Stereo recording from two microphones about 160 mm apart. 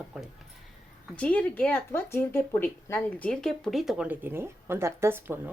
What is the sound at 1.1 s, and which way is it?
Speech, 10° left (ahead or behind).